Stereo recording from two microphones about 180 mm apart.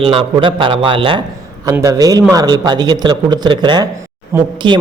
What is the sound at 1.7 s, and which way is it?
A man's voice, 20° right (ahead or behind).